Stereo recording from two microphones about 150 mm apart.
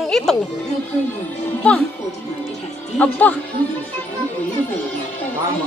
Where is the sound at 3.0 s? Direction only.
10° left (ahead or behind).